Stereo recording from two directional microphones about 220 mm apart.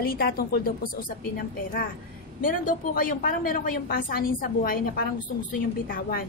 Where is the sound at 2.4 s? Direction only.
40° left (ahead or behind).